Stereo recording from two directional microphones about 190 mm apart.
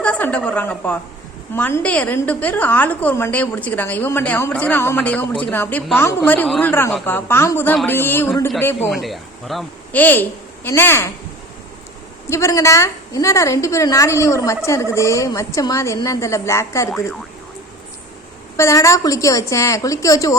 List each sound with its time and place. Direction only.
0.0 s a woman's voice: 5° left (ahead or behind)
8.9 s speech: centre (ahead or behind)
12.3 s a woman's voice: 15° left (ahead or behind)
18.5 s a woman's voice: 15° left (ahead or behind)